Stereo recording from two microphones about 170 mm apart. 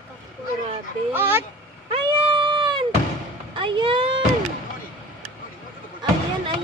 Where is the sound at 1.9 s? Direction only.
30° right (ahead or behind).